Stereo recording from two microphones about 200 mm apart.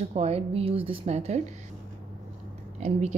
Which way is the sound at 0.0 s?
35° right (ahead or behind).